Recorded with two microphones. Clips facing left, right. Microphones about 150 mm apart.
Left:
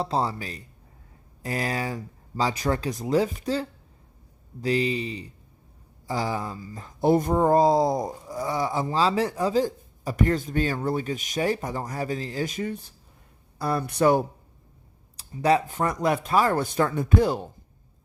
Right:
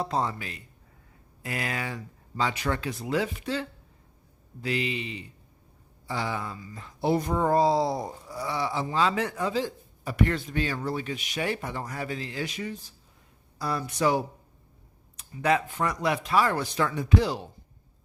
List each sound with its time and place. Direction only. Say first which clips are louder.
0.0 s speech: left 2 dB; 30° left (ahead or behind); by 14.3 s 50° left (ahead or behind)
15.1 s speech: left 4 dB; 35° left (ahead or behind); by 17.5 s 50° left (ahead or behind)